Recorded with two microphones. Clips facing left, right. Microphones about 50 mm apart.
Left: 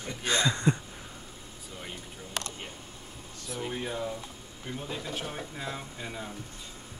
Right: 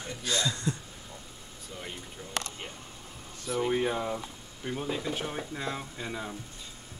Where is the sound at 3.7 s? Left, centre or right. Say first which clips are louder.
Right 4 dB; right.